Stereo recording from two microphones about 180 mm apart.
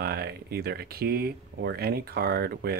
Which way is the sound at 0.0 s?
60° right (ahead or behind).